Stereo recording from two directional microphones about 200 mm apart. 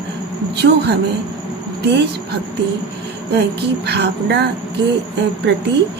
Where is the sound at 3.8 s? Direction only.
55° right (ahead or behind).